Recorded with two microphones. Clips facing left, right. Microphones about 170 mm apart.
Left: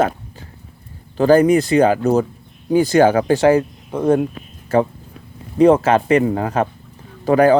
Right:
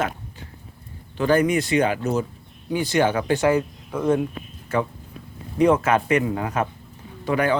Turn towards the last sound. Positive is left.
turn(degrees=35)  # may be behind; listen again after turning